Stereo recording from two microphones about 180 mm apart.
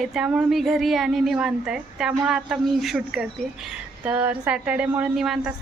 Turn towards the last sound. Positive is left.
turn(degrees=0)  # may be behind; listen again after turning